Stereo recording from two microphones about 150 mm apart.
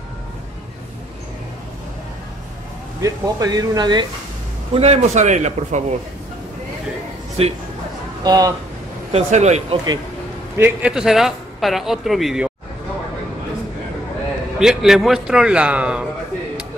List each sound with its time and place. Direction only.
3.0 s speech: 25° right (ahead or behind)
4.7 s a man's voice: 45° right (ahead or behind)
7.4 s speech: 40° right (ahead or behind)
8.2 s speech: 25° right (ahead or behind)
9.1 s a man's voice: 45° right (ahead or behind)
10.6 s a man's voice: 5° right (ahead or behind)
14.6 s a man's voice: 5° right (ahead or behind)